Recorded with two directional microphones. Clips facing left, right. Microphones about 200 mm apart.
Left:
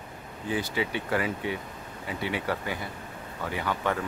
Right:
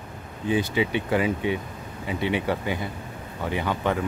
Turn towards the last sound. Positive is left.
turn(degrees=-20)  # may be behind; listen again after turning